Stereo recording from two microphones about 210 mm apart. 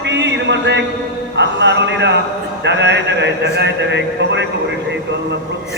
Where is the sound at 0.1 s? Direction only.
55° right (ahead or behind).